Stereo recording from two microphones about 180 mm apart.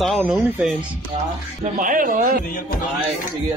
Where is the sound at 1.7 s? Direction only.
50° right (ahead or behind).